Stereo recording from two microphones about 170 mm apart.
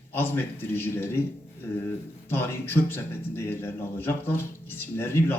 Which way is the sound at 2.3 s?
15° left (ahead or behind).